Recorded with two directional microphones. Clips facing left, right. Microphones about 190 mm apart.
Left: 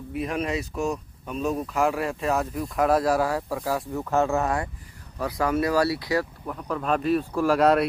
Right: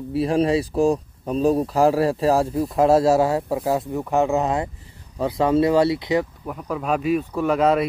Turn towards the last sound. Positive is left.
turn(degrees=0)  # may be behind; listen again after turning